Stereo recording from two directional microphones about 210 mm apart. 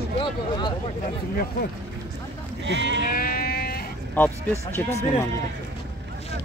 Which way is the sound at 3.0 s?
40° left (ahead or behind).